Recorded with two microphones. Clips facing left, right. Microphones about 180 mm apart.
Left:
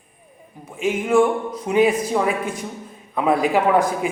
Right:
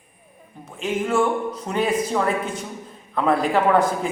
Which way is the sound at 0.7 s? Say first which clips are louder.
Left 4 dB; 10° left (ahead or behind).